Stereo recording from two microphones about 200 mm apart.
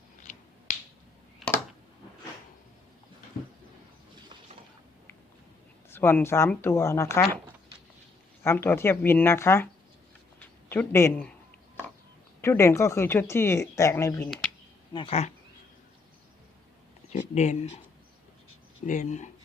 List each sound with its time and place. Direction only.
0.2 s finger snapping: 40° left (ahead or behind)
1.4 s a sound: centre (ahead or behind)
5.9 s speech: 10° left (ahead or behind)
8.4 s speech: 10° left (ahead or behind)
10.4 s a sound: 10° left (ahead or behind)
12.4 s speech: 15° left (ahead or behind)
14.9 s speech: 30° left (ahead or behind)
17.1 s speech: 35° left (ahead or behind)
18.9 s speech: 35° left (ahead or behind)